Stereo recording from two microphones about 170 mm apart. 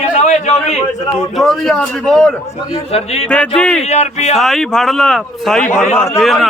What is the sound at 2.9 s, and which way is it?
Speech, 35° left (ahead or behind).